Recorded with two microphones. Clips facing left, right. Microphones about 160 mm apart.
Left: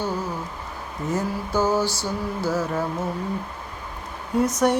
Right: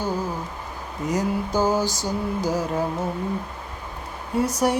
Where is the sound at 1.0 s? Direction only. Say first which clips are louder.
Right 2 dB; 15° right (ahead or behind).